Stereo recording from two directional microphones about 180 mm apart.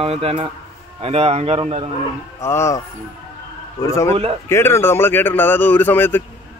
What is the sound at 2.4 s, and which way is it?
Speech, 15° left (ahead or behind).